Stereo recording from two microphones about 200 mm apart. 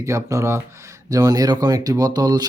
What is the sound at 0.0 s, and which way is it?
A man's voice, 15° right (ahead or behind).